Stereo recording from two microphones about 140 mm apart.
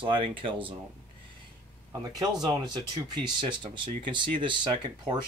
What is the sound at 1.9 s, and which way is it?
Speech, 30° right (ahead or behind).